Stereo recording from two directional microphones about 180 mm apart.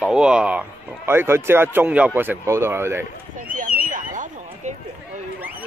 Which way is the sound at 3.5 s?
50° right (ahead or behind).